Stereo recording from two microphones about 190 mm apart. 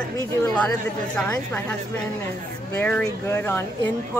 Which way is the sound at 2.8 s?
10° left (ahead or behind).